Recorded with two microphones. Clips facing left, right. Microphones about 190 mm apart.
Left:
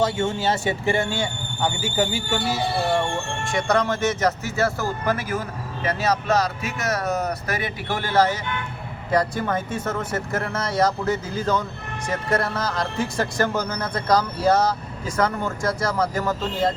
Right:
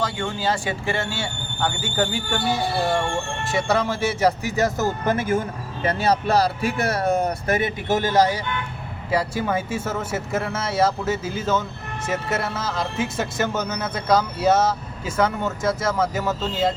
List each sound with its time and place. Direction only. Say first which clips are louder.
0.0 s speech: left 3 dB; 20° left (ahead or behind); by 2.6 s 5° left (ahead or behind)
3.4 s speech: left 1 dB; 5° right (ahead or behind)